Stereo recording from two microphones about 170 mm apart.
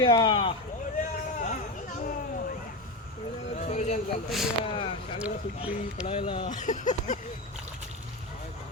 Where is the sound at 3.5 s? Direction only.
45° left (ahead or behind).